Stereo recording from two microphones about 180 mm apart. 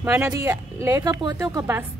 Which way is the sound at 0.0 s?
15° right (ahead or behind).